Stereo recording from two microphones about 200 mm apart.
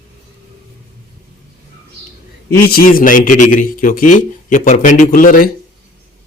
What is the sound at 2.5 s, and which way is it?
A man's voice, 50° left (ahead or behind).